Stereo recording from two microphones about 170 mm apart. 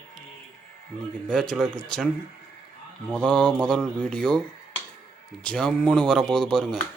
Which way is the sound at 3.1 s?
5° left (ahead or behind).